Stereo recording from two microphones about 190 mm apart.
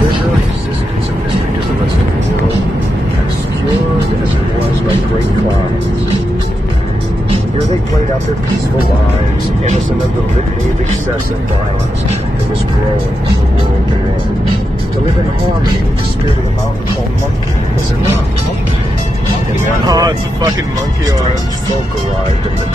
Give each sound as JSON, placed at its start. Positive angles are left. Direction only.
{"t": 19.9, "sound": "speech", "side_deg": -20}